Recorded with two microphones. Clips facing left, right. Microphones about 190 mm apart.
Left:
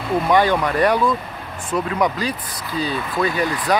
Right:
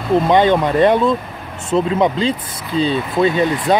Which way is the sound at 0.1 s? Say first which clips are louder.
Right 4 dB; 20° right (ahead or behind).